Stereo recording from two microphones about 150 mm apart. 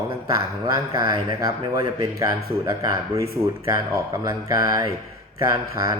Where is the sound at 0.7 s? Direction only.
25° right (ahead or behind).